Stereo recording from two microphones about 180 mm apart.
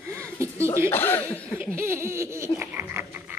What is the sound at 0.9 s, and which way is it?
Speech, 10° left (ahead or behind).